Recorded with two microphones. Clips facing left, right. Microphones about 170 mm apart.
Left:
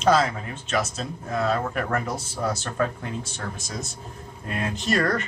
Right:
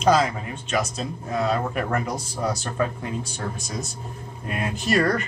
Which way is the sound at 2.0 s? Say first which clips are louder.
Right 1 dB; 5° left (ahead or behind).